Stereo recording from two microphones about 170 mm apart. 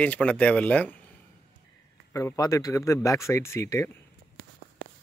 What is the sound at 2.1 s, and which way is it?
Speech, 15° left (ahead or behind).